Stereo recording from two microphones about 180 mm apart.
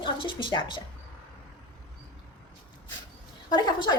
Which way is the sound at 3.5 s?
25° left (ahead or behind).